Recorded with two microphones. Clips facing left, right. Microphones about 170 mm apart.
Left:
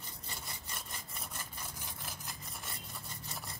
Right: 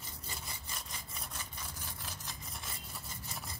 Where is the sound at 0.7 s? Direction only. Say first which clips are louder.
Even; centre (ahead or behind).